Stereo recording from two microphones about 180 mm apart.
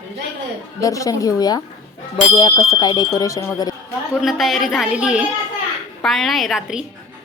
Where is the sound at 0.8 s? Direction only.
20° left (ahead or behind).